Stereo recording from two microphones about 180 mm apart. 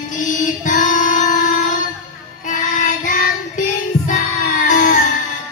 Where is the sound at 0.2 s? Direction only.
45° left (ahead or behind).